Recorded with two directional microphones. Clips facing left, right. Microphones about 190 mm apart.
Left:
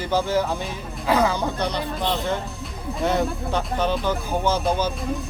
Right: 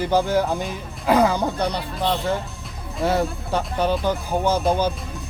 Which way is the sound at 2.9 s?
5° right (ahead or behind).